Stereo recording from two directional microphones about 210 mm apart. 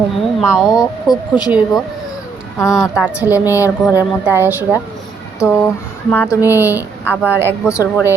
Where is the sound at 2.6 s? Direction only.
15° left (ahead or behind).